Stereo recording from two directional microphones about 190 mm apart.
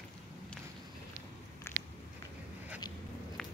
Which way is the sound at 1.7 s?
15° left (ahead or behind).